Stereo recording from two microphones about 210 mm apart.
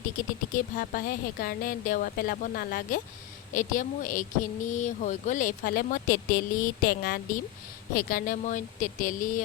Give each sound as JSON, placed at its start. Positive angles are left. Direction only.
{"t": 0.2, "sound": "a woman's voice", "side_deg": 40}